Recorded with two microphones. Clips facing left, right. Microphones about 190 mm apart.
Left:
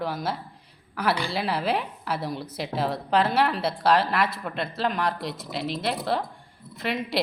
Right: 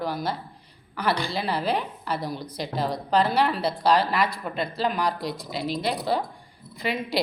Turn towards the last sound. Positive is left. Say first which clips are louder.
# right 1 dB
turn(degrees=0)  # may be behind; listen again after turning